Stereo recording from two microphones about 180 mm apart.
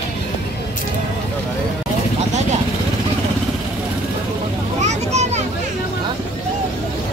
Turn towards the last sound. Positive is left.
turn(degrees=-40)  # may be behind; listen again after turning